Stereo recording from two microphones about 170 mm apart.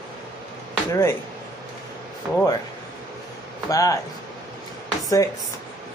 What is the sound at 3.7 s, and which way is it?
Speech, 20° left (ahead or behind).